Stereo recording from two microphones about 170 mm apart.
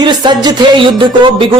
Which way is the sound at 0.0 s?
25° right (ahead or behind).